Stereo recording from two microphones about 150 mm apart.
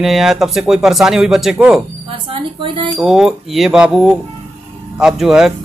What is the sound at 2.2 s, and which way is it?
Speech, 35° right (ahead or behind).